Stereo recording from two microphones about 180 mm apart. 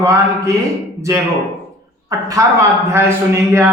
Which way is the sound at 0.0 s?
15° right (ahead or behind).